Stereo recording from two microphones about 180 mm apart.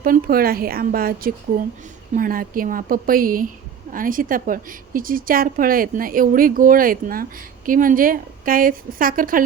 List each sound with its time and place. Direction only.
0.0 s a woman's voice: 55° right (ahead or behind)